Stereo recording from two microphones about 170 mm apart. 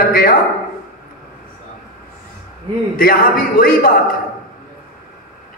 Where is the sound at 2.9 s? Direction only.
60° left (ahead or behind).